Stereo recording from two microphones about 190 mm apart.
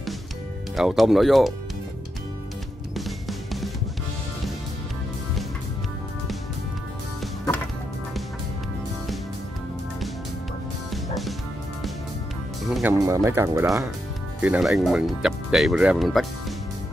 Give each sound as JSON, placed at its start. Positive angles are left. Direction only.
{"t": 0.7, "sound": "speech", "side_deg": 0}
{"t": 3.0, "sound": "music", "side_deg": 0}
{"t": 10.9, "sound": "music", "side_deg": 0}
{"t": 12.6, "sound": "music", "side_deg": 0}
{"t": 12.9, "sound": "speech", "side_deg": -15}
{"t": 14.4, "sound": "speech", "side_deg": -5}